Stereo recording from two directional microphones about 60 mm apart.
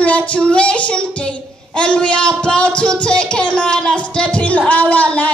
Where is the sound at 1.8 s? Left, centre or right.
Centre.